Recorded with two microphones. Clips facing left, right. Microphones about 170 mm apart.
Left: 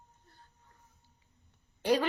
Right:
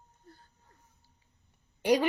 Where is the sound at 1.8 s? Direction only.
15° right (ahead or behind).